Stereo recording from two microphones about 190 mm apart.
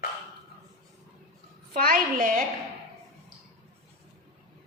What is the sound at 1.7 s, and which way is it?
Speech, 50° right (ahead or behind).